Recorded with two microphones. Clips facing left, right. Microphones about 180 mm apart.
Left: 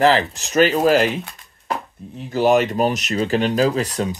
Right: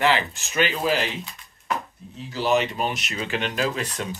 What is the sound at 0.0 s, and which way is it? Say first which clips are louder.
Speech: left 6 dB; 35° left (ahead or behind).